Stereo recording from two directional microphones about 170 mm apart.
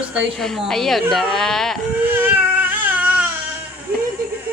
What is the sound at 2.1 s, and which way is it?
Baby cry, 10° right (ahead or behind).